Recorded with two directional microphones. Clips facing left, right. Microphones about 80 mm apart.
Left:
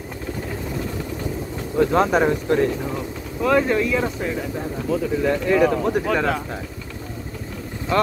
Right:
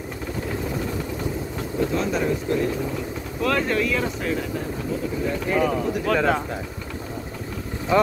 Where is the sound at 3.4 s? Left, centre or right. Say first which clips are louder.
Left 4 dB; centre.